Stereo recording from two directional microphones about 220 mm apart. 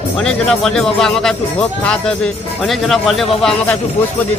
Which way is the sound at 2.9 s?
Centre (ahead or behind).